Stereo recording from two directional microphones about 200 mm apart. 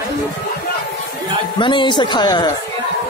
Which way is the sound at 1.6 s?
25° left (ahead or behind).